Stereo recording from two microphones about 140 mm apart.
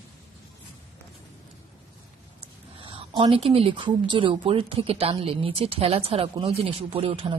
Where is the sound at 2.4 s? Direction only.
40° right (ahead or behind).